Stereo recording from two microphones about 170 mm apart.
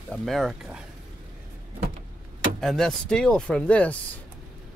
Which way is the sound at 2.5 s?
Centre (ahead or behind).